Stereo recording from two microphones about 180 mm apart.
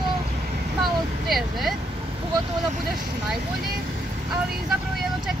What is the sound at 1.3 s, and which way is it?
Speech, centre (ahead or behind).